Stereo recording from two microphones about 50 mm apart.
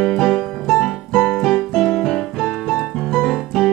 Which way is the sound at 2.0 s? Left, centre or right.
Centre.